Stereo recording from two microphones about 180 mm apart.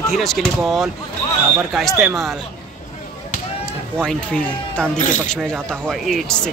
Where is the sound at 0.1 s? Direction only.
Centre (ahead or behind).